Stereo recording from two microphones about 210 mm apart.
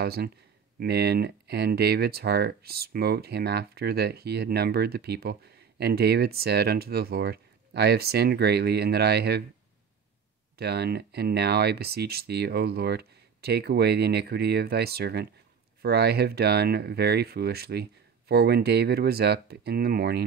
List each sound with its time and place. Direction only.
0.0 s speech: 50° right (ahead or behind)
10.6 s speech: 50° right (ahead or behind)